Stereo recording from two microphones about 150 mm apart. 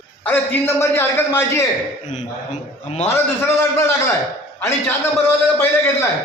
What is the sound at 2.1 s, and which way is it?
Speech, 50° left (ahead or behind).